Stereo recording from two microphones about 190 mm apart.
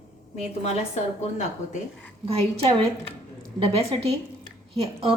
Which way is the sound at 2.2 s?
35° right (ahead or behind).